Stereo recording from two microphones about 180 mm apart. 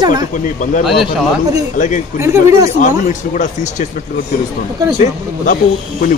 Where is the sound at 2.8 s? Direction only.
45° left (ahead or behind).